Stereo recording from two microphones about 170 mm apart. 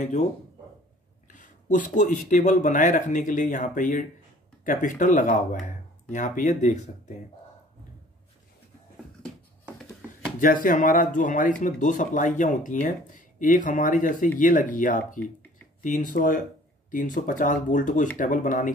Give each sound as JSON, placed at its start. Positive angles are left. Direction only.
{"t": 0.0, "sound": "speech", "side_deg": 45}
{"t": 1.3, "sound": "speech", "side_deg": 50}
{"t": 10.4, "sound": "speech", "side_deg": 50}